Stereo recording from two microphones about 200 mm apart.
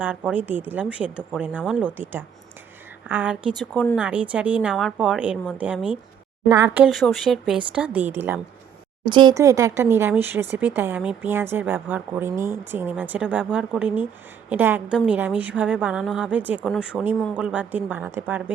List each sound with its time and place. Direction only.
0.0 s a woman's voice: 10° right (ahead or behind)
6.5 s a woman's voice: 15° right (ahead or behind)
7.0 s a woman's voice: centre (ahead or behind)
9.0 s a woman's voice: 25° right (ahead or behind)